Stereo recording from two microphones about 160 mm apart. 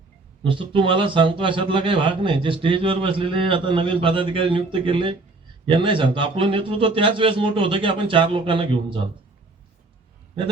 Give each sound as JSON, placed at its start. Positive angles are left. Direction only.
{"t": 0.4, "sound": "a man's voice", "side_deg": -30}